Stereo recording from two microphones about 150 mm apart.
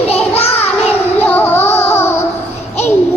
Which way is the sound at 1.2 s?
10° left (ahead or behind).